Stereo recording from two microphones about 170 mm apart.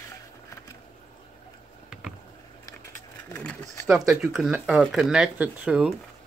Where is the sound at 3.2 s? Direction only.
15° left (ahead or behind).